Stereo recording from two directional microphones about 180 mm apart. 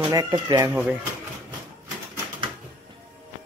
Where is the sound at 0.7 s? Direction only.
10° right (ahead or behind).